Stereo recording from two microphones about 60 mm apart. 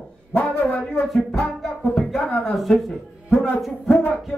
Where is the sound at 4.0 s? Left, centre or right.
Left.